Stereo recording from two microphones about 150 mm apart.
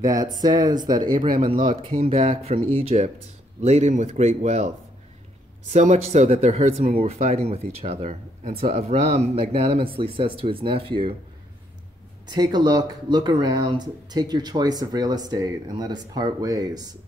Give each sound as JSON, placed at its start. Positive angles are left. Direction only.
{"t": 0.0, "sound": "speech", "side_deg": -25}
{"t": 12.3, "sound": "speech", "side_deg": -30}